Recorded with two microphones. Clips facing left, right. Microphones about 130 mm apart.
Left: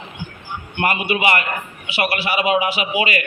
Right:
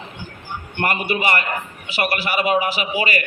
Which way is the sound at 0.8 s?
45° right (ahead or behind).